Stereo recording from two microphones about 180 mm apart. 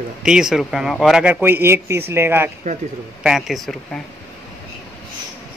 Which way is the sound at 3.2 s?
Centre (ahead or behind).